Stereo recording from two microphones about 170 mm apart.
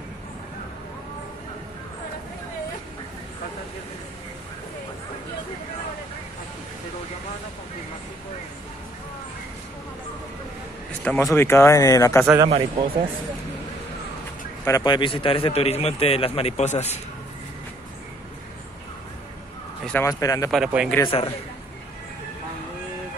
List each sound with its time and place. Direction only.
11.1 s speech: 15° left (ahead or behind)
12.4 s speech: 30° right (ahead or behind)
14.6 s a man's voice: 20° left (ahead or behind); by 16.9 s 40° left (ahead or behind)
19.8 s a man's voice: 10° left (ahead or behind)
20.1 s speech: 20° left (ahead or behind)
20.5 s speech: 5° right (ahead or behind)